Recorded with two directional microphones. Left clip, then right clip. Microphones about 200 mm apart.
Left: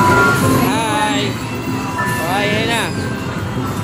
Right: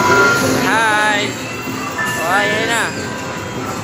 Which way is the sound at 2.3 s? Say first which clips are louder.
Right 3 dB; 20° left (ahead or behind).